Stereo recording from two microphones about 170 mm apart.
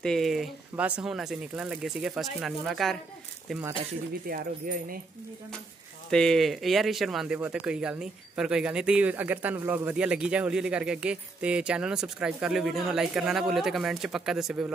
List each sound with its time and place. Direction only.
0.0 s speech: centre (ahead or behind)
4.3 s speech: 55° right (ahead or behind)
6.0 s speech: 5° left (ahead or behind)